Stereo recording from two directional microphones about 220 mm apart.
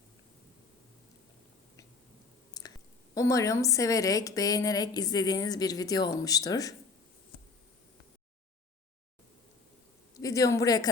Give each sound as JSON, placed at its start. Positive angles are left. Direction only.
{"t": 2.5, "sound": "chewing", "side_deg": 15}
{"t": 3.2, "sound": "a woman's voice", "side_deg": 15}
{"t": 10.2, "sound": "speech", "side_deg": 15}